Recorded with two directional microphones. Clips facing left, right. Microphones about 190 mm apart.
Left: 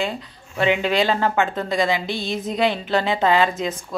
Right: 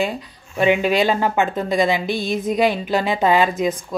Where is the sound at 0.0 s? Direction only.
15° right (ahead or behind).